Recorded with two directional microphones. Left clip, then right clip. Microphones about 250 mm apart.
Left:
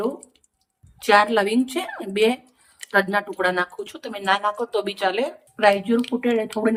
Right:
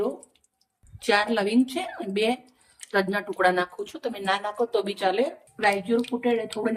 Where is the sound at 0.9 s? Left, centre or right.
Centre.